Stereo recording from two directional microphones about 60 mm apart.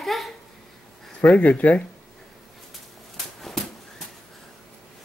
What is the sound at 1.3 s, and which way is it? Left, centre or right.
Speech, left.